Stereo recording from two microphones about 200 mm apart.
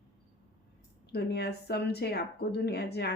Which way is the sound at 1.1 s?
55° left (ahead or behind).